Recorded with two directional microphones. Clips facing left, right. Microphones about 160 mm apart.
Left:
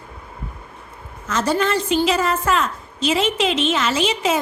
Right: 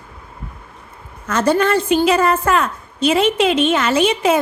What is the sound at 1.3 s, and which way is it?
A woman's voice, 55° right (ahead or behind).